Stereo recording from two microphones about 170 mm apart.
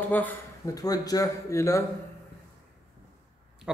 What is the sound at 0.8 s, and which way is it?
Speech, 20° left (ahead or behind).